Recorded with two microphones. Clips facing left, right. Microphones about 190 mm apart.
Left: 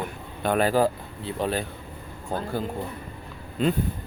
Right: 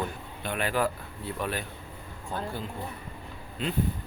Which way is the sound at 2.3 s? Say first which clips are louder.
Left 5 dB; 40° left (ahead or behind).